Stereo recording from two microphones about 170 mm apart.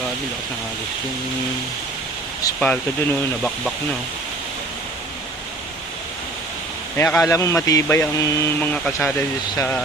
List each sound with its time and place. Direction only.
2.6 s a man's voice: 10° left (ahead or behind)
6.9 s a man's voice: 15° left (ahead or behind)
8.7 s a man's voice: 5° left (ahead or behind)